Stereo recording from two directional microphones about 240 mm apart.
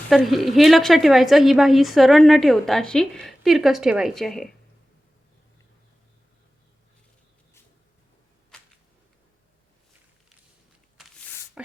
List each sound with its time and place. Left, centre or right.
0.1 s a woman's voice: centre
11.0 s a sound: centre
11.6 s beatboxing: centre